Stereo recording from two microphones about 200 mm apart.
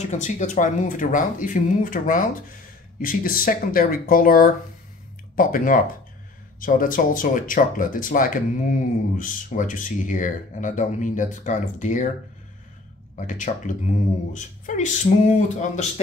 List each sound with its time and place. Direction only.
0.1 s speech: 40° left (ahead or behind)
13.3 s speech: 40° left (ahead or behind)